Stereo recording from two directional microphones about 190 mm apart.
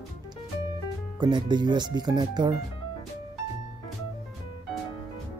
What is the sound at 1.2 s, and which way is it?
Speech, 25° right (ahead or behind).